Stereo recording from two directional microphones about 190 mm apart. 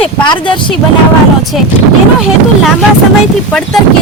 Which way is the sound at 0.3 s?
25° left (ahead or behind).